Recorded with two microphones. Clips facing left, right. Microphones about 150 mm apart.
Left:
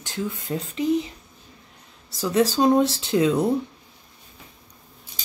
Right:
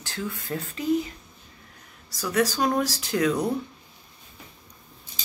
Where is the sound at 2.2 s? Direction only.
25° left (ahead or behind).